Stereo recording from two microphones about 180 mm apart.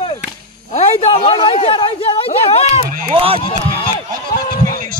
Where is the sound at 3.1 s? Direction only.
30° right (ahead or behind).